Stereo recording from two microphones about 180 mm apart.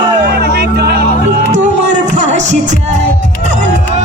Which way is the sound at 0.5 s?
60° right (ahead or behind).